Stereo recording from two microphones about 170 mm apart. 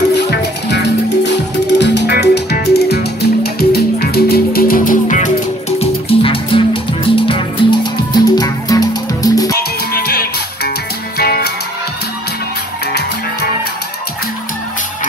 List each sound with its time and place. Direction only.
0.1 s music: 80° left; by 5.3 s 45° left (ahead or behind)
5.8 s music: 35° left (ahead or behind)
9.9 s music: 65° left (ahead or behind)